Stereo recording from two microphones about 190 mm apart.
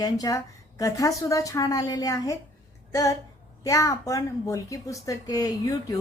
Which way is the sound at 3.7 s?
15° left (ahead or behind).